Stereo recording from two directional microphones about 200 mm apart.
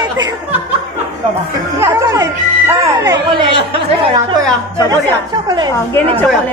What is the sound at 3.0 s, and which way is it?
Chatter, 20° right (ahead or behind).